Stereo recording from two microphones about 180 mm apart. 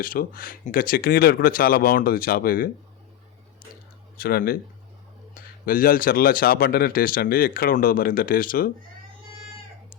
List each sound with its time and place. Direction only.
0.0 s speech: 50° left (ahead or behind)
4.2 s speech: 55° left (ahead or behind)